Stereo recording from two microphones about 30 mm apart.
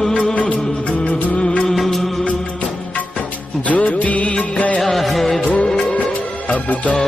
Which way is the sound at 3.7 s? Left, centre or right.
Left.